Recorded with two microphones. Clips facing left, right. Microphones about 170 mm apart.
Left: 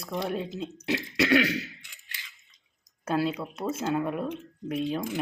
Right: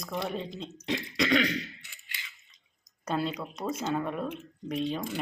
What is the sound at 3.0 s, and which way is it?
Speech, 5° left (ahead or behind).